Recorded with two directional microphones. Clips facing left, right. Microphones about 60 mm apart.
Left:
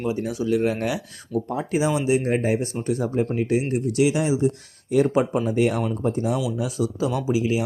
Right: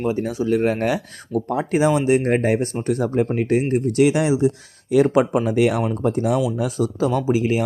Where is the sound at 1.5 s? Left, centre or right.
Right.